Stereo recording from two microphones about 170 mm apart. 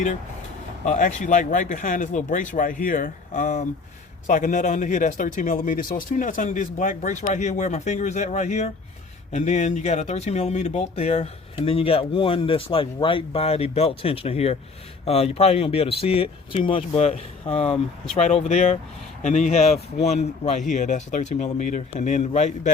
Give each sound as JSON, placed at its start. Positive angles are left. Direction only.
{"t": 0.9, "sound": "speech", "side_deg": 45}